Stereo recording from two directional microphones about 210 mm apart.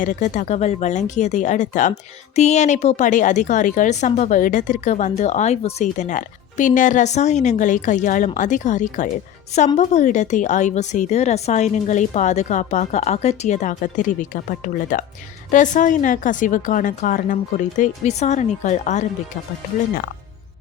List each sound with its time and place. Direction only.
0.0 s a woman's voice: 35° left (ahead or behind)